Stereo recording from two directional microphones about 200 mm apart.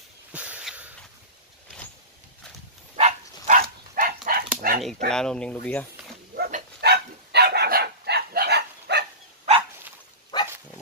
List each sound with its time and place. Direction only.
0.3 s a sound: 5° right (ahead or behind)
3.0 s dog: 35° right (ahead or behind)
5.1 s speech: 5° left (ahead or behind)
6.3 s dog: 50° right (ahead or behind)
10.3 s dog: 20° left (ahead or behind)